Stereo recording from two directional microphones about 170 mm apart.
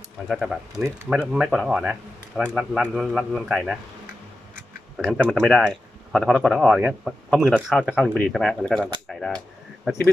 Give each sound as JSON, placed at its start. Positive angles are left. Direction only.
{"t": 0.3, "sound": "speech", "side_deg": 0}